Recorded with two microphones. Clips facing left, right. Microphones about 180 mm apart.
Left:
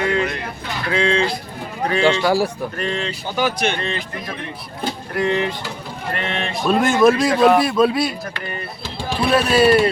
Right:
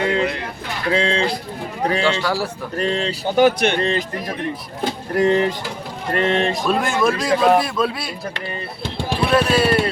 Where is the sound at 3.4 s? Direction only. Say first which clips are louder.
Right 6 dB; 60° right (ahead or behind).